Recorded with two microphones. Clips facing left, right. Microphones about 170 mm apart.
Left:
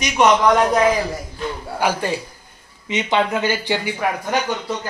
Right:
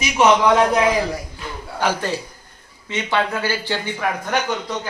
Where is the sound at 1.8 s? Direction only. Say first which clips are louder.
Left 1 dB; 15° left (ahead or behind).